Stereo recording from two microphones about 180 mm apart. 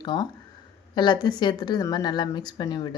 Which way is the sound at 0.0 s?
25° left (ahead or behind).